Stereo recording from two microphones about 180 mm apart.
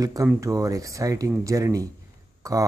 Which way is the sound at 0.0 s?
20° right (ahead or behind).